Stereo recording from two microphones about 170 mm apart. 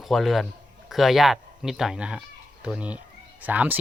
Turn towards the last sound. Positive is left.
turn(degrees=-10)  # may be behind; listen again after turning